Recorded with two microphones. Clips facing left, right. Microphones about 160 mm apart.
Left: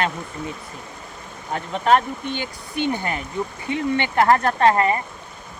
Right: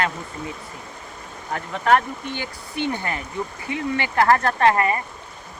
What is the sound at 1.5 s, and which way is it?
Speech, 20° left (ahead or behind).